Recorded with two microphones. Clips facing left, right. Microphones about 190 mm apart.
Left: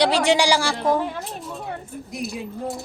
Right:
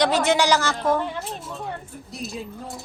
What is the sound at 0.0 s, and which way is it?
Speech, 15° left (ahead or behind).